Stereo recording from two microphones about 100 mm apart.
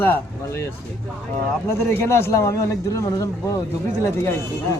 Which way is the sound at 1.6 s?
25° left (ahead or behind).